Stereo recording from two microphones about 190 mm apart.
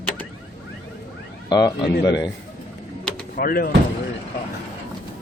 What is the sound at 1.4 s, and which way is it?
Speech, 20° left (ahead or behind).